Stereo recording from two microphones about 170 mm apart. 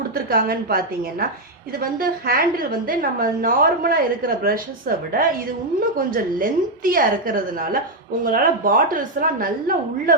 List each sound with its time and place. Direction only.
0.1 s a woman's voice: 60° right (ahead or behind)